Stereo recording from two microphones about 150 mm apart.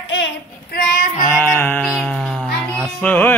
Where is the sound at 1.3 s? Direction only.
15° left (ahead or behind).